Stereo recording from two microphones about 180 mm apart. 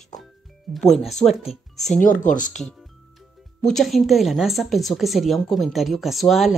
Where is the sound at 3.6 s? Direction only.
Centre (ahead or behind).